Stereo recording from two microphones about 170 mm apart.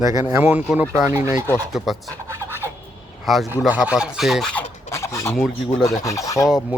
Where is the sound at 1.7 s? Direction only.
Centre (ahead or behind).